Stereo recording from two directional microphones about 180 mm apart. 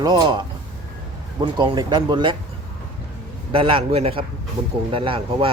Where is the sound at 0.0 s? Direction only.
25° right (ahead or behind).